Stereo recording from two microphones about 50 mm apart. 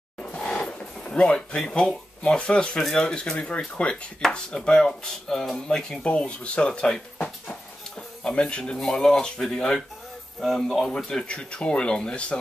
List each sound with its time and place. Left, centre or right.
0.2 s a sound: centre
1.6 s speech: centre
4.5 s speech: centre
6.0 s speech: left
8.8 s speech: centre
10.4 s speech: centre
11.1 s speech: centre